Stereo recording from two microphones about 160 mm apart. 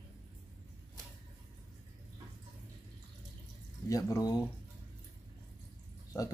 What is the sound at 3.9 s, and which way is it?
Speech, 20° left (ahead or behind).